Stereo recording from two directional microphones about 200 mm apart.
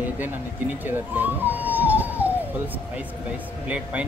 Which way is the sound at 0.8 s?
10° right (ahead or behind).